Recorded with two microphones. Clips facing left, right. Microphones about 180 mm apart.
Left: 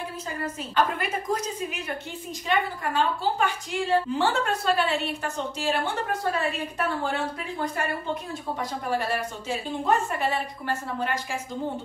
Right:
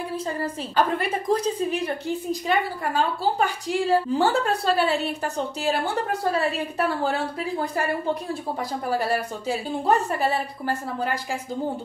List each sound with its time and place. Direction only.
0.9 s a woman's voice: 30° right (ahead or behind)